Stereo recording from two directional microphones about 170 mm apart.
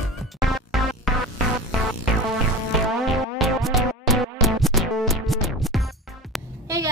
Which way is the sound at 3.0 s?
Centre (ahead or behind).